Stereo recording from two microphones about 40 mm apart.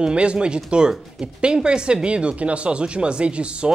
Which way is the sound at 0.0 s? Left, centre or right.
Right.